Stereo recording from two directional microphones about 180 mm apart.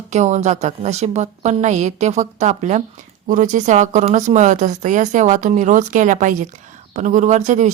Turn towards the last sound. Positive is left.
turn(degrees=-40)  # may be behind; listen again after turning